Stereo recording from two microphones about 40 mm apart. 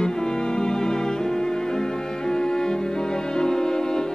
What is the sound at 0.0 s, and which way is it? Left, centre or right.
Music, centre.